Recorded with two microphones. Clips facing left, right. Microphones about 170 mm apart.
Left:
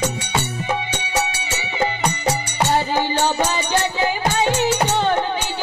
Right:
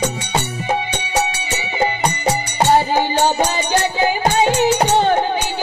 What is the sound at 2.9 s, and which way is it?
Music, 15° right (ahead or behind).